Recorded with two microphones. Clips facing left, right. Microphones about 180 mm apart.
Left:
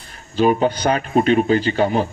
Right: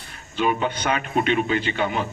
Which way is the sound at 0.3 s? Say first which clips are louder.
Left 7 dB; 35° left (ahead or behind).